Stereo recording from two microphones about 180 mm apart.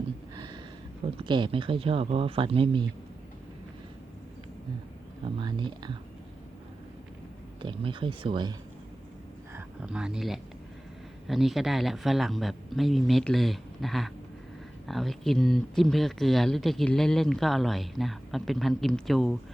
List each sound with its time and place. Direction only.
1.0 s speech: 30° right (ahead or behind)
5.2 s speech: 25° right (ahead or behind)
7.6 s speech: 30° right (ahead or behind)
9.6 s speech: 5° right (ahead or behind)